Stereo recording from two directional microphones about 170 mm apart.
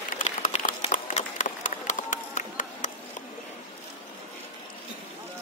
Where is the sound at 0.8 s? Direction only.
45° left (ahead or behind).